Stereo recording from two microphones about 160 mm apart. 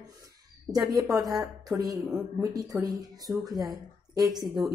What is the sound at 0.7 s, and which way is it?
Speech, 20° right (ahead or behind).